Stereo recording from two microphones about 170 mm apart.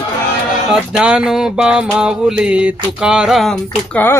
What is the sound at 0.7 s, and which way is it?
Music, 5° right (ahead or behind).